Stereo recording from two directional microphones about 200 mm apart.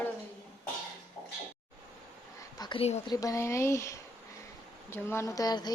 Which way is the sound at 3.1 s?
15° left (ahead or behind).